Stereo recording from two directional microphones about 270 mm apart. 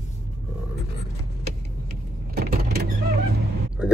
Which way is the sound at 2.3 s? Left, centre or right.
Right.